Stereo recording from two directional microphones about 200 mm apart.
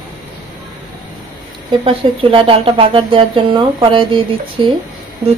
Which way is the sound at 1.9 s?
25° right (ahead or behind).